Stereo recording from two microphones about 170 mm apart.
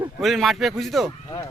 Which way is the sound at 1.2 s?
25° left (ahead or behind).